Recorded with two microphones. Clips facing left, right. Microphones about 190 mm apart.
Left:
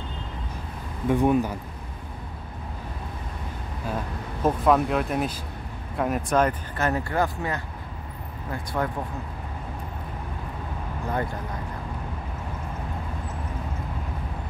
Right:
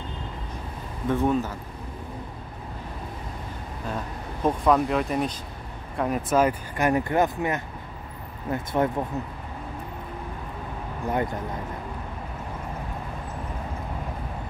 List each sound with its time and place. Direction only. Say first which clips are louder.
1.0 s speech: left 2 dB; 15° left (ahead or behind)
3.8 s speech: left 2 dB; 5° left (ahead or behind); by 8.9 s 20° right (ahead or behind)